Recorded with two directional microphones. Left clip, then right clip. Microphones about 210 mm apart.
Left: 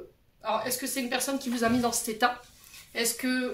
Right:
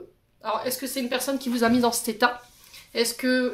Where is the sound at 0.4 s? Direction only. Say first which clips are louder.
Right 2 dB; 35° right (ahead or behind).